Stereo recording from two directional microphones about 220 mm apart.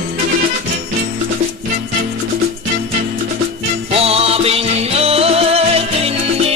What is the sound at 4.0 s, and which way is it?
Music, 25° right (ahead or behind).